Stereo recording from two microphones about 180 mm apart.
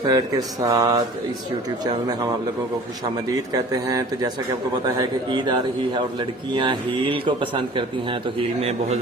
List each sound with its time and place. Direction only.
0.1 s a man's voice: 20° right (ahead or behind)
3.2 s a man's voice: 20° right (ahead or behind); by 9.0 s 35° right (ahead or behind)